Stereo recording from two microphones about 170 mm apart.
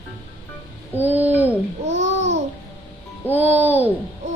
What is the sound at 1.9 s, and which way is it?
Babbling, 90° right.